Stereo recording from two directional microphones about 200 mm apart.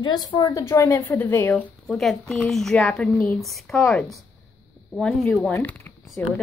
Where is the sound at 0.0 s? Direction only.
20° left (ahead or behind); by 4.2 s centre (ahead or behind).